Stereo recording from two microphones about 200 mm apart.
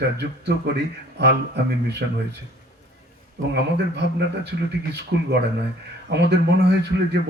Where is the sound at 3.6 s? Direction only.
55° right (ahead or behind).